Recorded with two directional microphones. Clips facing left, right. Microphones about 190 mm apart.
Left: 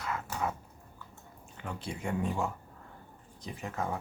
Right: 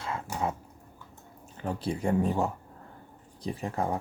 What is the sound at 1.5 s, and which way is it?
Speech, 35° right (ahead or behind).